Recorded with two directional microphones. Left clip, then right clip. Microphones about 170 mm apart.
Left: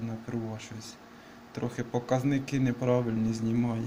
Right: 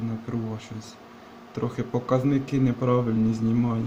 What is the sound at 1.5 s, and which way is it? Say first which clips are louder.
A man's voice: right 4 dB; 10° right (ahead or behind).